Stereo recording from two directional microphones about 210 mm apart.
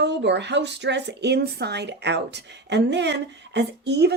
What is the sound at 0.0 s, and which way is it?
Speech, 55° right (ahead or behind).